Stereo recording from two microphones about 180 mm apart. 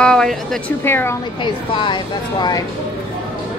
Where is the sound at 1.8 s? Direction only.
25° left (ahead or behind).